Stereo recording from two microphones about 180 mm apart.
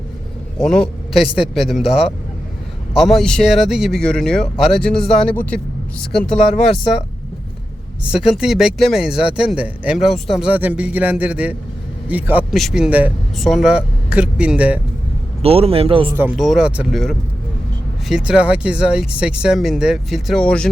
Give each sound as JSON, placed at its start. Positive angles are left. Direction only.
{"t": 0.6, "sound": "speech", "side_deg": 5}
{"t": 8.2, "sound": "speech", "side_deg": 0}
{"t": 15.4, "sound": "a man's voice", "side_deg": -35}
{"t": 16.1, "sound": "speech", "side_deg": -10}